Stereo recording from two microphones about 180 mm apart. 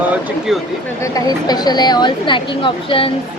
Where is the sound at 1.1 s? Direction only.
20° left (ahead or behind).